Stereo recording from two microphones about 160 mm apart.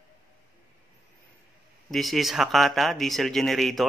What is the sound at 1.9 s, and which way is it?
Speech, centre (ahead or behind).